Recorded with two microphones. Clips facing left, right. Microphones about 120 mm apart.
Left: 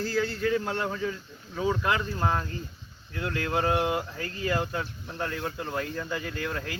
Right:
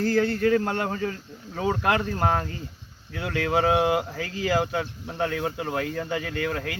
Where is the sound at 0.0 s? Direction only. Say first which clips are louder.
Right 6 dB; 55° right (ahead or behind).